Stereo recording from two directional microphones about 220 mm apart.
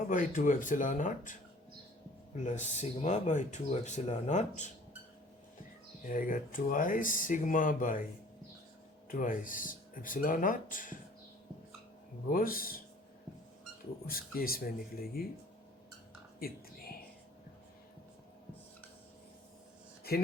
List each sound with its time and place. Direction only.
0.1 s speech: 35° left (ahead or behind)
6.1 s speech: 35° left (ahead or behind)
9.0 s speech: 35° left (ahead or behind)
12.3 s speech: 40° left (ahead or behind)
14.1 s speech: 40° left (ahead or behind)
20.1 s speech: 45° left (ahead or behind)